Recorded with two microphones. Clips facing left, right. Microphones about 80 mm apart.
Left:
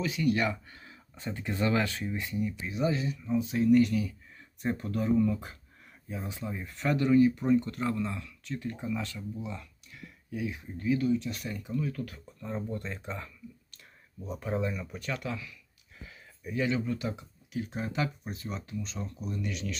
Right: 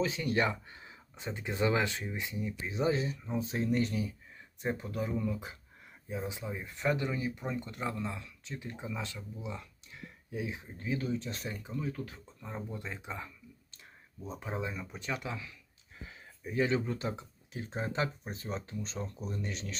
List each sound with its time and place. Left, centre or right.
0.0 s speech: right
2.6 s speech: right